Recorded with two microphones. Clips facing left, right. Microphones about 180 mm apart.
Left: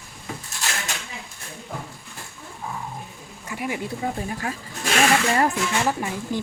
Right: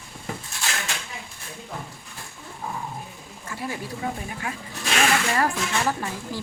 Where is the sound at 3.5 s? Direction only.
15° left (ahead or behind).